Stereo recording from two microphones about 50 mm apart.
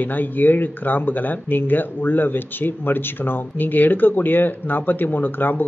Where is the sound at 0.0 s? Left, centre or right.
Left.